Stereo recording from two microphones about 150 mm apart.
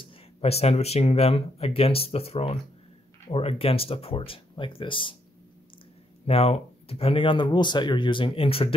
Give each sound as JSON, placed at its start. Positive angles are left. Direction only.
{"t": 0.0, "sound": "speech", "side_deg": 45}
{"t": 6.2, "sound": "speech", "side_deg": 45}